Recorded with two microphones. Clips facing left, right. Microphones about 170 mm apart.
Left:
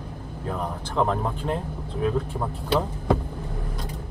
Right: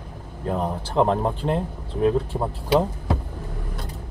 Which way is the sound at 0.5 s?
30° right (ahead or behind).